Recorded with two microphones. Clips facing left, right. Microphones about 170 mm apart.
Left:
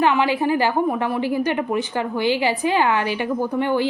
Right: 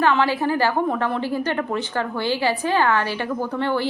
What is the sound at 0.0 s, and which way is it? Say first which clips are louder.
A woman's voice: left 1 dB; 15° left (ahead or behind).